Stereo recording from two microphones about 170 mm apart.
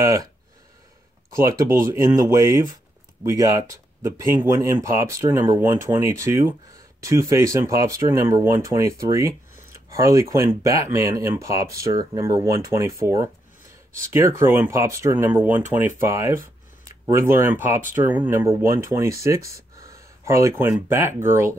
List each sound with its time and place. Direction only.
1.4 s speech: 15° right (ahead or behind)
9.1 s a sound: 15° right (ahead or behind)
10.3 s speech: 15° right (ahead or behind)